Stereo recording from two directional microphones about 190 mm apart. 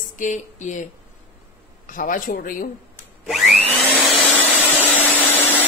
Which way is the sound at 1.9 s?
45° left (ahead or behind).